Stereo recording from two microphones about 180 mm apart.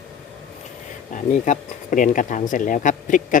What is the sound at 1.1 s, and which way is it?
Speech, 45° left (ahead or behind).